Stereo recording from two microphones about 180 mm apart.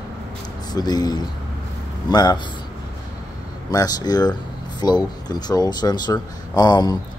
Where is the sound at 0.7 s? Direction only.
20° left (ahead or behind).